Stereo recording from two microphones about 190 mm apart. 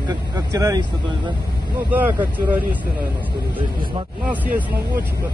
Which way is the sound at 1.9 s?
10° right (ahead or behind).